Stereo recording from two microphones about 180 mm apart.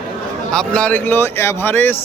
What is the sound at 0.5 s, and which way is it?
A man's voice, 5° left (ahead or behind).